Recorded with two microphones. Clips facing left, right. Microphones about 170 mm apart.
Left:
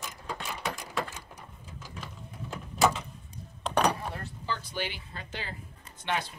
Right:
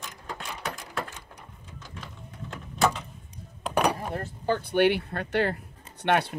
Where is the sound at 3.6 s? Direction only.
10° right (ahead or behind).